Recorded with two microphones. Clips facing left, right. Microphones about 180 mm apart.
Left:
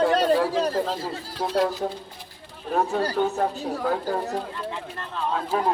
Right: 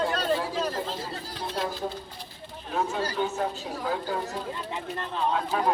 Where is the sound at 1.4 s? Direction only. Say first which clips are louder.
Left 9 dB; 80° left.